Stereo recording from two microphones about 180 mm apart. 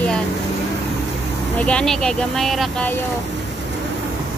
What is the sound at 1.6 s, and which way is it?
Speech, 5° left (ahead or behind).